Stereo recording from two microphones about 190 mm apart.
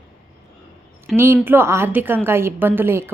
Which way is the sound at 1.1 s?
15° right (ahead or behind).